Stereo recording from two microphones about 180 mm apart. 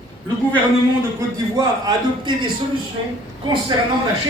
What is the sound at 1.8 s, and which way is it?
Speech, 25° right (ahead or behind).